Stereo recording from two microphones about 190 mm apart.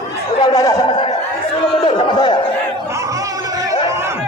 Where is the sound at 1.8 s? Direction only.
25° left (ahead or behind).